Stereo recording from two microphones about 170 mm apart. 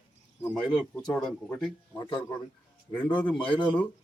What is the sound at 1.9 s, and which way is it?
Speech, 25° left (ahead or behind).